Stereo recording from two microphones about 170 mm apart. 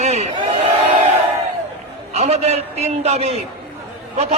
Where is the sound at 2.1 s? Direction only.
40° right (ahead or behind).